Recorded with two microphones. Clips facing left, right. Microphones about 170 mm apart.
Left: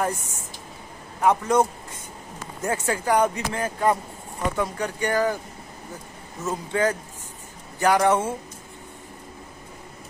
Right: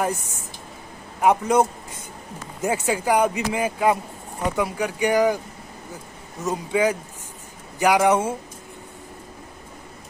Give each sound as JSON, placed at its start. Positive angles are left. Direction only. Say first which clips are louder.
{"t": 1.2, "sound": "speech", "louder": "right 2 dB", "side_deg": -15}
{"t": 6.4, "sound": "speech", "louder": "right 2 dB", "side_deg": -10}